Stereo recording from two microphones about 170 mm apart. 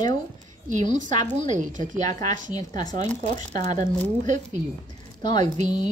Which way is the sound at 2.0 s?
20° left (ahead or behind).